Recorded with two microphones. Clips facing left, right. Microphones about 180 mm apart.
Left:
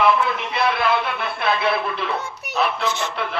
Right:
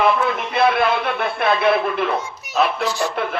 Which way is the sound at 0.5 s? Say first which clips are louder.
Right 5 dB; 50° right (ahead or behind).